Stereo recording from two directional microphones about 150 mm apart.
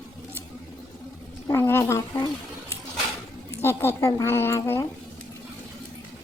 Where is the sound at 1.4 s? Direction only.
15° left (ahead or behind).